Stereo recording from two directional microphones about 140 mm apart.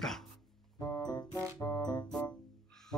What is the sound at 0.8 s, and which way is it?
Music, 25° left (ahead or behind).